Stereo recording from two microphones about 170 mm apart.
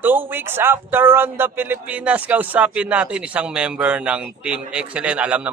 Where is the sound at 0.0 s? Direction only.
10° right (ahead or behind).